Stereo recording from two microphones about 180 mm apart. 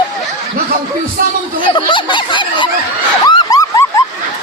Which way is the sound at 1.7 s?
25° left (ahead or behind).